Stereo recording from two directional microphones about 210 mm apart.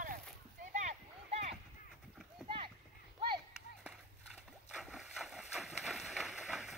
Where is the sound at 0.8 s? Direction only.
30° right (ahead or behind).